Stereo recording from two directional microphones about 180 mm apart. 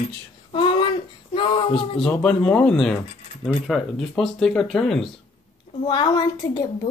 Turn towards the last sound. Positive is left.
turn(degrees=20)  # may be behind; listen again after turning